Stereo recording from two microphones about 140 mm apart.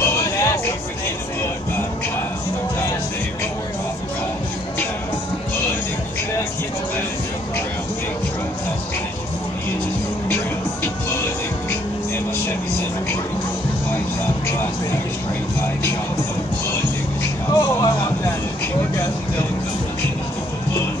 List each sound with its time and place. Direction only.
0.0 s music: 15° left (ahead or behind)
17.6 s music: 25° left (ahead or behind)